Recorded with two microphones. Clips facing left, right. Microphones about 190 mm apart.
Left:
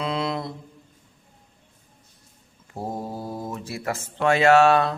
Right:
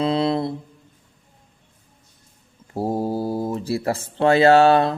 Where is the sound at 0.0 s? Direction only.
30° right (ahead or behind).